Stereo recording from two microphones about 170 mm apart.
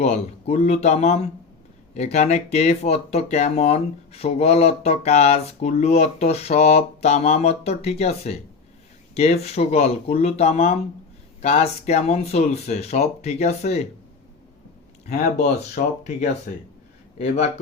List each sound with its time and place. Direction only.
0.0 s speech: 40° left (ahead or behind)
15.0 s speech: 45° left (ahead or behind)